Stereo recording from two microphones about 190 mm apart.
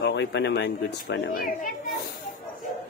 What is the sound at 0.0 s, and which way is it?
Speech, 65° left (ahead or behind).